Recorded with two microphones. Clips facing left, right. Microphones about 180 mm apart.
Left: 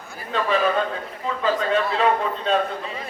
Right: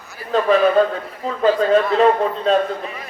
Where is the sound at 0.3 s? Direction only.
45° right (ahead or behind).